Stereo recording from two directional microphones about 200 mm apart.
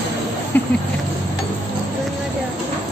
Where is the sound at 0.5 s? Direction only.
10° left (ahead or behind).